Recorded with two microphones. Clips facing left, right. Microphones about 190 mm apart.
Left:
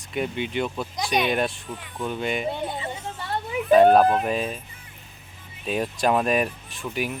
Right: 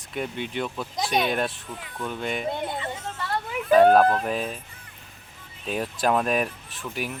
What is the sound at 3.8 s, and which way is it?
Speech, 5° left (ahead or behind).